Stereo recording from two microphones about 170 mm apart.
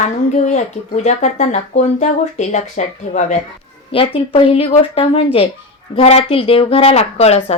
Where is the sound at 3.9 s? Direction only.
35° left (ahead or behind).